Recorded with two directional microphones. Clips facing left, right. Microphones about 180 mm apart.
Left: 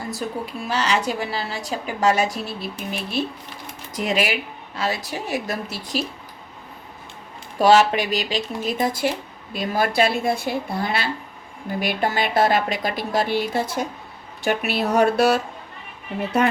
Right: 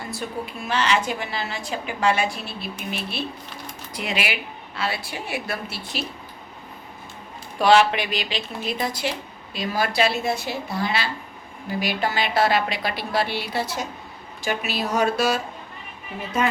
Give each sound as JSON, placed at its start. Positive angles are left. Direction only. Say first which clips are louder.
{"t": 0.1, "sound": "a woman's voice", "louder": "left 2 dB", "side_deg": 40}
{"t": 7.6, "sound": "speech", "louder": "left 2 dB", "side_deg": 40}
{"t": 16.4, "sound": "speech", "louder": "left 3 dB", "side_deg": 60}